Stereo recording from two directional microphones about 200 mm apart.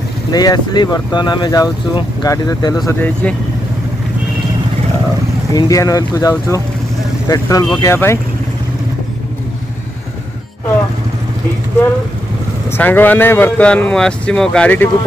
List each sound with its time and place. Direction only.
0.3 s speech: 20° left (ahead or behind)
2.9 s speech: 10° left (ahead or behind)
5.5 s speech: 15° left (ahead or behind)
12.7 s speech: 10° left (ahead or behind)